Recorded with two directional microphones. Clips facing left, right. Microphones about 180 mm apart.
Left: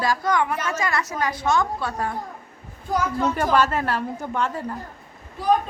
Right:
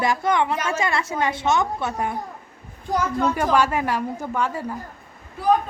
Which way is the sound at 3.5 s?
10° right (ahead or behind).